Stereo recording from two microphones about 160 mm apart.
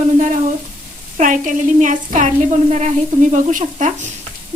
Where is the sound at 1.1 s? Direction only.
55° right (ahead or behind).